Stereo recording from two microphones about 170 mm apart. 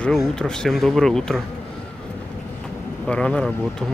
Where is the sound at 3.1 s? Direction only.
5° left (ahead or behind).